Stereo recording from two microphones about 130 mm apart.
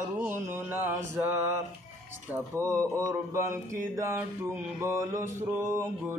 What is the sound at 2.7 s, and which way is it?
Mantra, 25° right (ahead or behind).